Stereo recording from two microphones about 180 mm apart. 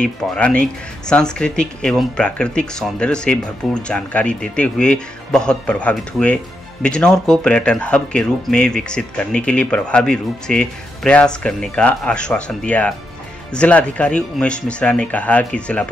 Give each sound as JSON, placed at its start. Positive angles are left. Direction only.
{"t": 0.0, "sound": "speech", "side_deg": 5}